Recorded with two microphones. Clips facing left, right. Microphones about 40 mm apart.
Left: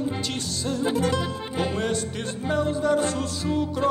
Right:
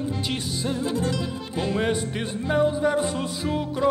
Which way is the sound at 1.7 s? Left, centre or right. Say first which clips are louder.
Right 2 dB; centre.